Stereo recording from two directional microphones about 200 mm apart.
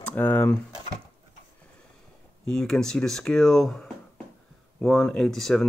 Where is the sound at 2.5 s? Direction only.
5° left (ahead or behind).